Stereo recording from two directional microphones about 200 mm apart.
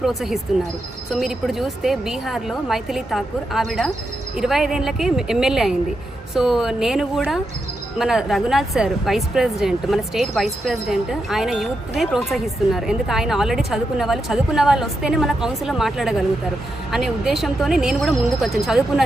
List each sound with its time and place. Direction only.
0.0 s speech: centre (ahead or behind)